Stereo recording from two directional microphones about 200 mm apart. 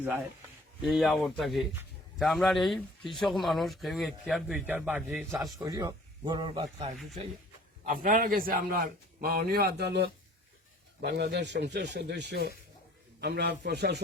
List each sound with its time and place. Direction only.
0.8 s speech: centre (ahead or behind)
5.5 s speech: 15° right (ahead or behind)
7.9 s a man's voice: 45° right (ahead or behind)
11.0 s speech: 55° right (ahead or behind)